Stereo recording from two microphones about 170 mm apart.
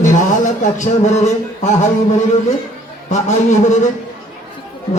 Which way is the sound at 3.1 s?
45° left (ahead or behind).